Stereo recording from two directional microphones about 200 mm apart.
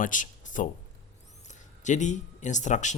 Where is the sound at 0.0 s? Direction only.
40° left (ahead or behind).